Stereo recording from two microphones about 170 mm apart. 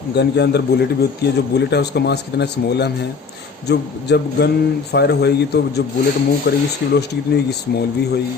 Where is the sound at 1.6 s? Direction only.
80° left.